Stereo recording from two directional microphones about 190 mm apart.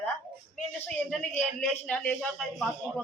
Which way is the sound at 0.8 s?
5° left (ahead or behind).